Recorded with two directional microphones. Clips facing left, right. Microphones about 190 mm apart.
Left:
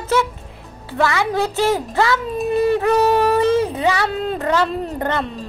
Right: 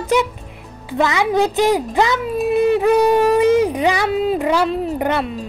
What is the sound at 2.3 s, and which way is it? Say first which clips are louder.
Speech: right 3 dB; 5° right (ahead or behind).